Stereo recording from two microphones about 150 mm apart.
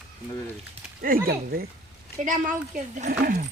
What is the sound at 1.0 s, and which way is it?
Speech, 80° right.